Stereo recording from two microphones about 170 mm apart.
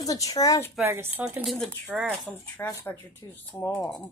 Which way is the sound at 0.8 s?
10° right (ahead or behind).